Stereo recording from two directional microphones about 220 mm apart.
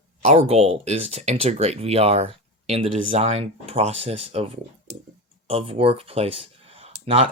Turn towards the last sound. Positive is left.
turn(degrees=-25)  # may be behind; listen again after turning